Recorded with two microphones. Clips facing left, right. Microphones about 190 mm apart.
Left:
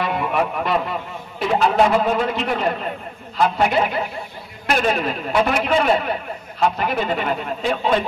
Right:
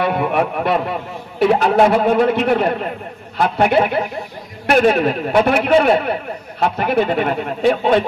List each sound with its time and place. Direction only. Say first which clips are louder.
0.0 s a man's voice: right 4 dB; 55° right (ahead or behind)